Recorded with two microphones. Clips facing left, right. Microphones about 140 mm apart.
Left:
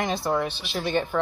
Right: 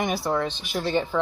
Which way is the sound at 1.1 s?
10° left (ahead or behind).